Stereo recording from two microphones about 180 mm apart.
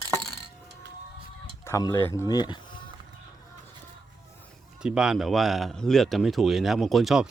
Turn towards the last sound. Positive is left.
turn(degrees=0)  # may be behind; listen again after turning